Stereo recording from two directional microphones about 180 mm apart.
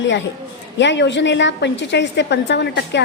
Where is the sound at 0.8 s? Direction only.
80° left.